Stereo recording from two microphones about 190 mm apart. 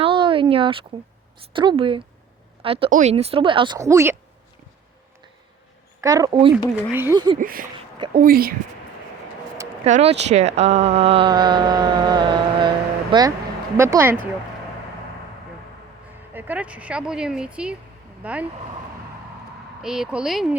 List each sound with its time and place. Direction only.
0.0 s a sound: 25° right (ahead or behind)
1.5 s speech: 25° right (ahead or behind)
6.0 s speech: 20° right (ahead or behind)
6.9 s speech: 10° right (ahead or behind)
7.3 s a woman's voice: 50° right (ahead or behind)
7.9 s a sound: 25° right (ahead or behind)
8.2 s a woman's voice: 50° right (ahead or behind)
9.8 s speech: 35° right (ahead or behind); by 14.2 s 15° right (ahead or behind)
16.3 s speech: 10° right (ahead or behind)
19.8 s speech: 5° right (ahead or behind)